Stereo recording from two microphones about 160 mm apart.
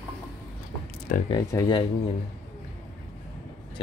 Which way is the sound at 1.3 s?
25° left (ahead or behind).